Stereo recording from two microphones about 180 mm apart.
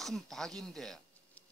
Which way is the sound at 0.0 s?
Centre (ahead or behind).